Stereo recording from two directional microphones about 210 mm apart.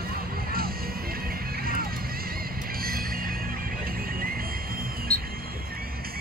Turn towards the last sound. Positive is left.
turn(degrees=5)  # may be behind; listen again after turning